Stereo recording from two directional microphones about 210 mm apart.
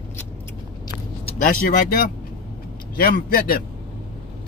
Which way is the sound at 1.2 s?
40° left (ahead or behind).